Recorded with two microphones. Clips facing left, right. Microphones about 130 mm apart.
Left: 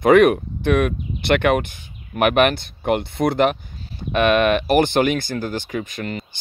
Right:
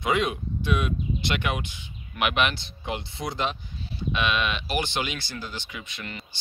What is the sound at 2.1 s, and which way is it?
Speech, 50° left (ahead or behind).